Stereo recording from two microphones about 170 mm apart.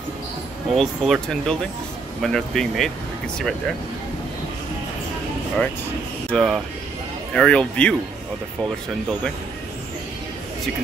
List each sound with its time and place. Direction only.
0.7 s speech: centre (ahead or behind)
6.3 s speech: centre (ahead or behind)